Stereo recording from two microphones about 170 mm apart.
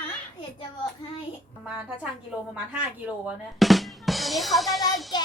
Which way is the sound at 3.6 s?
Centre (ahead or behind).